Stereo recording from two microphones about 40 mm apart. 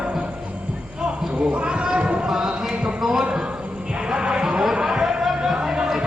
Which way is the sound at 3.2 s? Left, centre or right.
Right.